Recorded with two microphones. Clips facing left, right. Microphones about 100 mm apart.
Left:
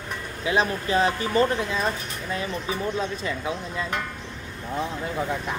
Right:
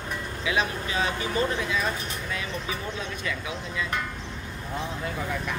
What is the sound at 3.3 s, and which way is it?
Speech, 35° left (ahead or behind).